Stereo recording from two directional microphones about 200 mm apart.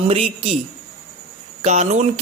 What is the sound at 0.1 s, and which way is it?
Speech, 30° right (ahead or behind).